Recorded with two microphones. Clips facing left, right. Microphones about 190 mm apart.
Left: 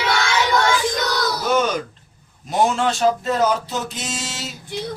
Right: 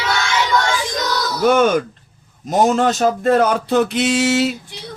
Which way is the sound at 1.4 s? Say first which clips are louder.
Right 7 dB; 55° right (ahead or behind).